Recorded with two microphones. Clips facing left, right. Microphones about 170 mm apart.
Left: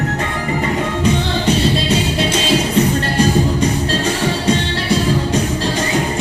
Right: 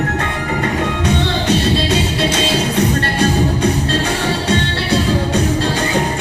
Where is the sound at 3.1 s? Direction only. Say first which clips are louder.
Left 1 dB; 65° right (ahead or behind).